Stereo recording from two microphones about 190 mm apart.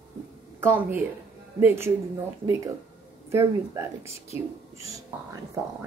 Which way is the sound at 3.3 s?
15° right (ahead or behind).